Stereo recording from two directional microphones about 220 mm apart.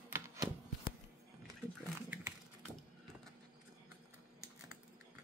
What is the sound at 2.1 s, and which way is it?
Typing, 5° right (ahead or behind).